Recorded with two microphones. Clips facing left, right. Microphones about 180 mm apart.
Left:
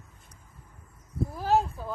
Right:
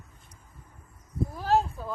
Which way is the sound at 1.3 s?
Centre (ahead or behind).